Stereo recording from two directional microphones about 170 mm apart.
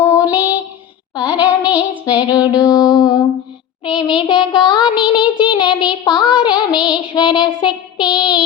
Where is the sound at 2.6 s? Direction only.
20° left (ahead or behind).